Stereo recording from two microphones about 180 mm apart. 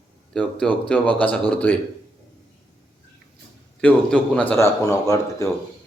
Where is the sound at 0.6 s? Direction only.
5° left (ahead or behind).